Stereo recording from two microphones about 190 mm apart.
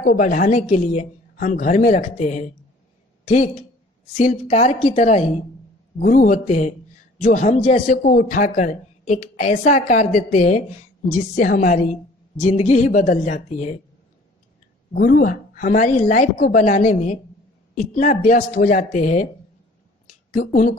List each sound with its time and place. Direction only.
0.0 s a woman's voice: 45° left (ahead or behind)
15.0 s a woman's voice: 50° left (ahead or behind)
20.1 s a sound: 40° left (ahead or behind)